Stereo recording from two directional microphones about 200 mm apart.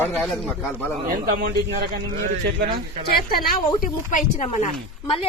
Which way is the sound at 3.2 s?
50° left (ahead or behind).